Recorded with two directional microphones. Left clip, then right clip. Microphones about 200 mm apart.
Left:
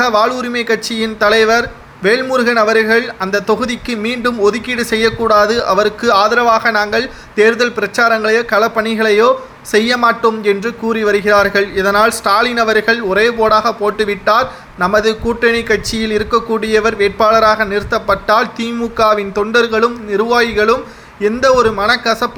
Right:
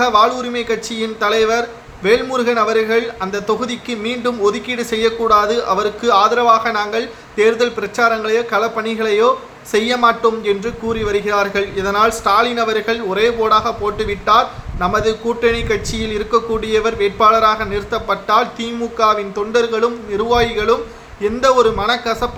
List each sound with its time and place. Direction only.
0.0 s a man's voice: 25° left (ahead or behind)